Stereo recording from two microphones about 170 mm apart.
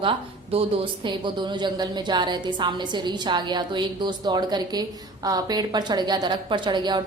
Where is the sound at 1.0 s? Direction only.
25° right (ahead or behind).